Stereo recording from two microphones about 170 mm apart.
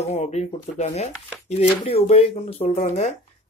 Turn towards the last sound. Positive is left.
turn(degrees=50)  # may be behind; listen again after turning